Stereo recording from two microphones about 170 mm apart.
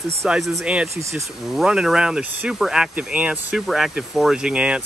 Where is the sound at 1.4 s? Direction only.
5° right (ahead or behind).